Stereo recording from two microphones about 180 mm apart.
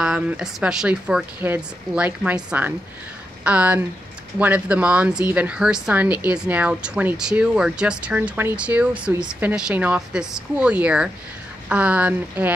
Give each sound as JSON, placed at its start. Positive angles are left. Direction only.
{"t": 0.0, "sound": "speech", "side_deg": -5}